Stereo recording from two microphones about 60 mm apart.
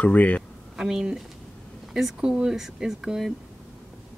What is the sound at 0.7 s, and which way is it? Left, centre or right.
Speech, centre.